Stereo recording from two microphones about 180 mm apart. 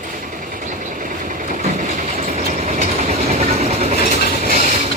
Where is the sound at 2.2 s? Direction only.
40° right (ahead or behind).